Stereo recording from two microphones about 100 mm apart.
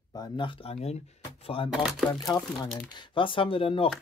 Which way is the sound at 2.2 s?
40° left (ahead or behind).